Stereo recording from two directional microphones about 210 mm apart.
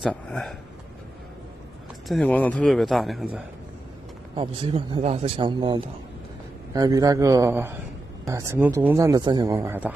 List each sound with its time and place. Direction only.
0.0 s a man's voice: 5° left (ahead or behind)
2.0 s a man's voice: 5° left (ahead or behind)
4.4 s a man's voice: 25° right (ahead or behind); by 9.9 s 10° right (ahead or behind)